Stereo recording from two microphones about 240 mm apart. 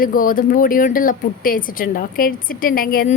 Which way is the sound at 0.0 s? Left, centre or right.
Left.